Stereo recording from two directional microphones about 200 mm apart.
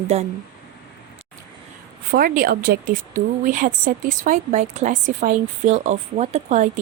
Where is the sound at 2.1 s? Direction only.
45° right (ahead or behind).